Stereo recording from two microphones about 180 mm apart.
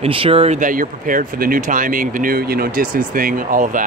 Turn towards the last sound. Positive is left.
turn(degrees=-50)  # may be behind; listen again after turning